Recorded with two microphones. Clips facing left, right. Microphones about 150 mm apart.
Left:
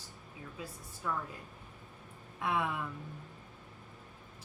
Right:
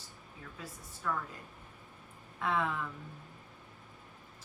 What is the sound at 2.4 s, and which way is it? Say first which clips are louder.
Speech: right 1 dB; 15° left (ahead or behind).